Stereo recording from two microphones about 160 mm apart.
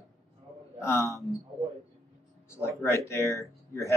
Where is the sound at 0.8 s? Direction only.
15° left (ahead or behind).